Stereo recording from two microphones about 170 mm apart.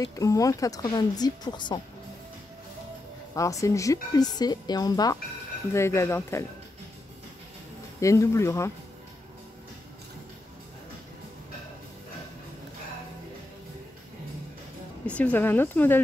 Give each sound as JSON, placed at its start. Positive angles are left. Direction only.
{"t": 0.0, "sound": "a woman's voice", "side_deg": 20}
{"t": 3.3, "sound": "a woman's voice", "side_deg": 20}
{"t": 8.0, "sound": "speech", "side_deg": 20}
{"t": 15.1, "sound": "speech", "side_deg": 10}